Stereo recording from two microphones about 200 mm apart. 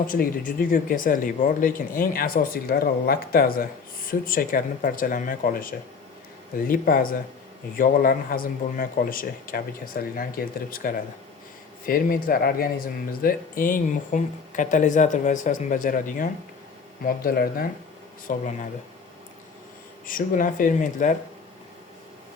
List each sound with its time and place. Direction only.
0.1 s speech: 45° left (ahead or behind)
20.1 s speech: 45° left (ahead or behind)